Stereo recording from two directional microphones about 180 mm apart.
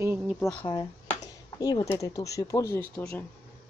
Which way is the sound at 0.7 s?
20° left (ahead or behind).